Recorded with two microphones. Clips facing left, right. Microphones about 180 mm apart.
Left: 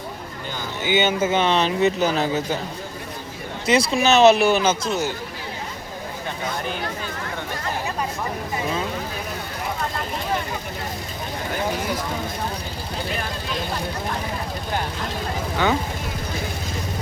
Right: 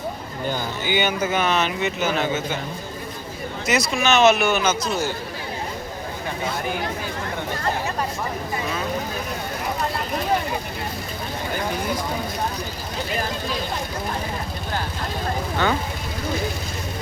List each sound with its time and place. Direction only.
0.9 s speech: 25° left (ahead or behind)
3.7 s speech: 30° left (ahead or behind)